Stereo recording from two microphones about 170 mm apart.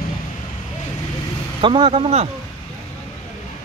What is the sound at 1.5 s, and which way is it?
Speech, 30° right (ahead or behind).